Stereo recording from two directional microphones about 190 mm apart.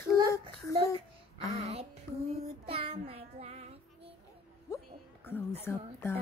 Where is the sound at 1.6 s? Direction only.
35° right (ahead or behind).